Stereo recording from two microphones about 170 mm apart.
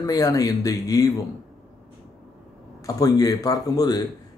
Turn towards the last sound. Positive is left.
turn(degrees=20)  # may be behind; listen again after turning